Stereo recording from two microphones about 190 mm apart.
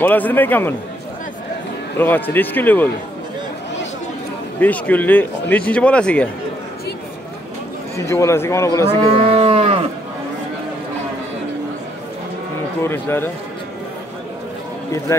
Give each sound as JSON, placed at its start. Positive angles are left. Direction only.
{"t": 0.0, "sound": "speech", "side_deg": 10}
{"t": 2.0, "sound": "speech", "side_deg": 10}
{"t": 4.6, "sound": "speech", "side_deg": 10}
{"t": 8.0, "sound": "speech", "side_deg": 15}
{"t": 9.3, "sound": "moo", "side_deg": -30}
{"t": 12.8, "sound": "speech", "side_deg": 10}
{"t": 15.1, "sound": "speech", "side_deg": 15}